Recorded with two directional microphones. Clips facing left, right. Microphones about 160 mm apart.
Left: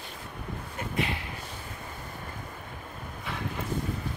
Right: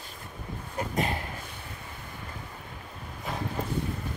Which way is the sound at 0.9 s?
45° right (ahead or behind).